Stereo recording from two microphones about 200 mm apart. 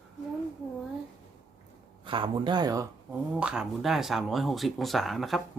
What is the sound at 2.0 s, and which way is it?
Speech, 25° right (ahead or behind).